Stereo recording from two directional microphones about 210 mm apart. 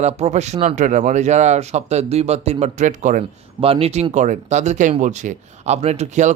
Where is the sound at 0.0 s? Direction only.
30° right (ahead or behind).